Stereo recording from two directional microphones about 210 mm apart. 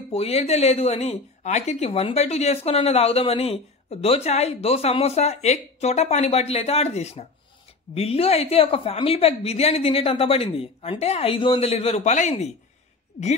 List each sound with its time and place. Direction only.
0.1 s speech: 30° left (ahead or behind)